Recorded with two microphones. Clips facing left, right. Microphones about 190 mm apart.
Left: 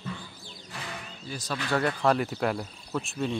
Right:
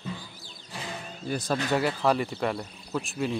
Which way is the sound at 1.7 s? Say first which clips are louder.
Left 1 dB; 5° right (ahead or behind).